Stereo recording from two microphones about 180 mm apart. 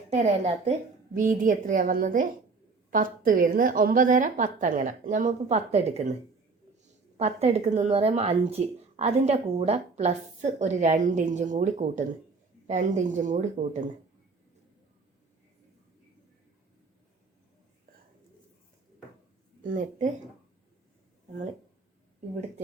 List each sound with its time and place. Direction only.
0.1 s a woman's voice: 35° right (ahead or behind)
7.2 s a woman's voice: 35° right (ahead or behind)
19.6 s a woman's voice: 50° right (ahead or behind)